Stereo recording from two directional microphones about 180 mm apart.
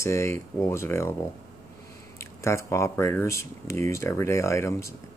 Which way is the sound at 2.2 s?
15° left (ahead or behind).